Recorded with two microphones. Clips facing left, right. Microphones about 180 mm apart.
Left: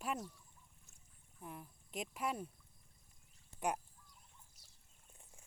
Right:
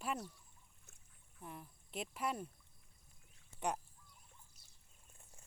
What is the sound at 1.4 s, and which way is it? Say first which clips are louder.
Speech: left 1 dB; 5° left (ahead or behind).